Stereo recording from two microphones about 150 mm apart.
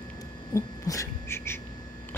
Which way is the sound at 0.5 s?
20° left (ahead or behind).